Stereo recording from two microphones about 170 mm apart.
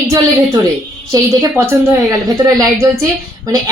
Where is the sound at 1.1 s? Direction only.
20° right (ahead or behind).